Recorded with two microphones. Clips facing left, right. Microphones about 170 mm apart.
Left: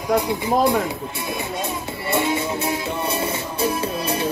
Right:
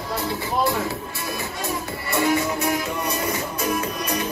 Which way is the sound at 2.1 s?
25° left (ahead or behind).